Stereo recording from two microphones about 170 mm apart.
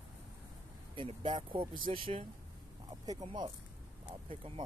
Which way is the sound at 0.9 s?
30° right (ahead or behind).